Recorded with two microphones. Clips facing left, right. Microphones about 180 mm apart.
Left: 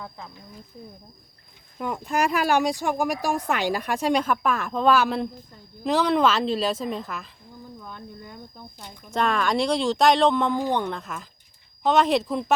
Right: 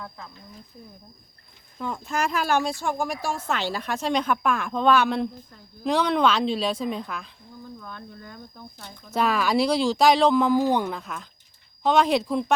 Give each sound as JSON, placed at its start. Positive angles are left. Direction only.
{"t": 1.8, "sound": "speech", "side_deg": 15}
{"t": 7.8, "sound": "speech", "side_deg": 15}
{"t": 9.1, "sound": "speech", "side_deg": -5}